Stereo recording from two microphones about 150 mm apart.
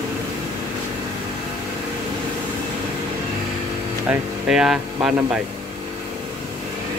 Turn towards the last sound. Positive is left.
turn(degrees=-5)  # may be behind; listen again after turning